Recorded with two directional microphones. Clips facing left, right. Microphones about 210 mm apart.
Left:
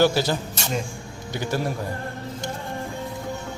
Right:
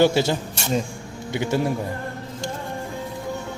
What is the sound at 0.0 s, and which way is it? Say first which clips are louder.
Speech: right 2 dB; 25° right (ahead or behind).